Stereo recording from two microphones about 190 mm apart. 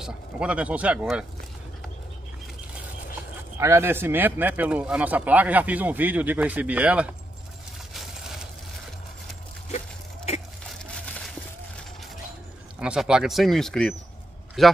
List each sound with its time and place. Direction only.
0.0 s speech: 5° right (ahead or behind)
3.5 s speech: 15° right (ahead or behind)
7.9 s a sound: centre (ahead or behind)
9.7 s a sound: 35° left (ahead or behind)
10.7 s crushing: centre (ahead or behind)
12.7 s speech: 5° right (ahead or behind)